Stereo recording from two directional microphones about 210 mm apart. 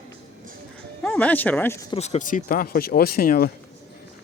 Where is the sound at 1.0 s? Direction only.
5° left (ahead or behind).